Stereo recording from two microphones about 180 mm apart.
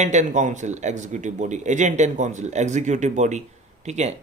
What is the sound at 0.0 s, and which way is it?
Speech, 40° right (ahead or behind).